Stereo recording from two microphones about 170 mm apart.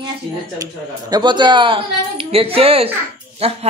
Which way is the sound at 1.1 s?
25° right (ahead or behind).